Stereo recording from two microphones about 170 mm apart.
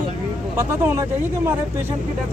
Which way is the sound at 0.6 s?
15° right (ahead or behind).